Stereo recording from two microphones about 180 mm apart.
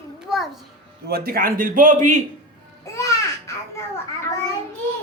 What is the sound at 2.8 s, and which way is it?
Babbling, 15° left (ahead or behind).